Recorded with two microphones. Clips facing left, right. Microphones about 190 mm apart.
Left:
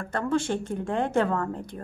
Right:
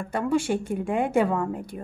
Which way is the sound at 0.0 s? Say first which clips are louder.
Right 2 dB; 10° right (ahead or behind).